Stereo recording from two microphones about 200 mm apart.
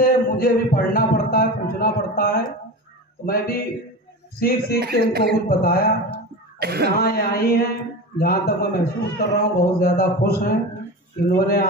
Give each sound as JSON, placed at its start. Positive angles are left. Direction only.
{"t": 0.0, "sound": "a man's voice", "side_deg": 45}
{"t": 4.7, "sound": "speech", "side_deg": -50}
{"t": 5.5, "sound": "a man's voice", "side_deg": 50}
{"t": 6.6, "sound": "speech", "side_deg": -55}
{"t": 7.0, "sound": "a man's voice", "side_deg": 50}